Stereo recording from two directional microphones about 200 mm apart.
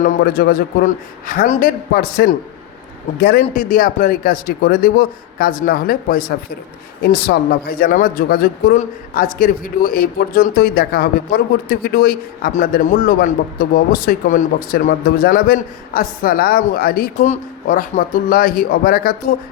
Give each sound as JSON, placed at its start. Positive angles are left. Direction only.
{"t": 0.0, "sound": "speech", "side_deg": 50}